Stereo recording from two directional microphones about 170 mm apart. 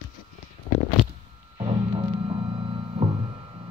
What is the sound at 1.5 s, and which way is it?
Music, 35° right (ahead or behind).